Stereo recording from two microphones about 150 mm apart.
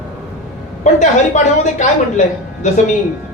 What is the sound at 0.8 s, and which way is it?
A woman's voice, 55° left (ahead or behind).